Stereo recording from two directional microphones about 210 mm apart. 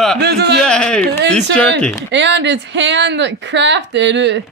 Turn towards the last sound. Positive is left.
turn(degrees=-55)  # may be behind; listen again after turning